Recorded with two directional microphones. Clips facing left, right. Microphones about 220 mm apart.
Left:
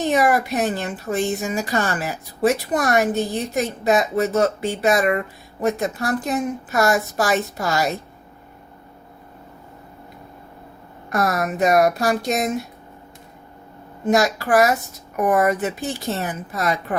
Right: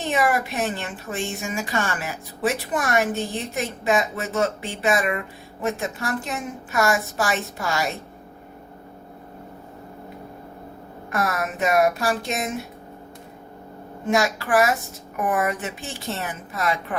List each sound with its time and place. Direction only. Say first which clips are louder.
0.1 s speech: left 2 dB; 40° left (ahead or behind)
11.1 s speech: left 4 dB; 40° left (ahead or behind)
14.1 s speech: left 3 dB; 40° left (ahead or behind)